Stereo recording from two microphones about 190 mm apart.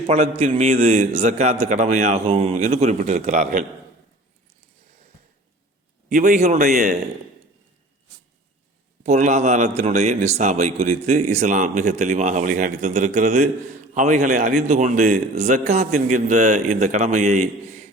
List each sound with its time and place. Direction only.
0.1 s a man's voice: 35° right (ahead or behind)
6.1 s a man's voice: 40° right (ahead or behind)
6.6 s speech: 55° right (ahead or behind)
9.0 s a man's voice: 40° right (ahead or behind)